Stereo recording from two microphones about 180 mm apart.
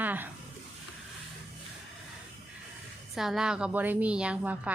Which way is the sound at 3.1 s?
Centre (ahead or behind).